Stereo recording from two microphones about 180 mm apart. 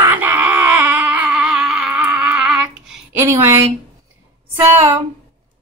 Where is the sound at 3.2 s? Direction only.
15° right (ahead or behind).